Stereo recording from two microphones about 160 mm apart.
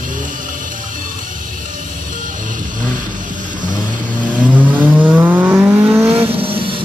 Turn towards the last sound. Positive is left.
turn(degrees=-35)  # may be behind; listen again after turning